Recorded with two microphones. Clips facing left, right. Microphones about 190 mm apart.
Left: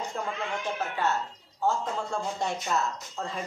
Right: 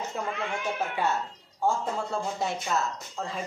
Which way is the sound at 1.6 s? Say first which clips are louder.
Right 1 dB; 10° right (ahead or behind).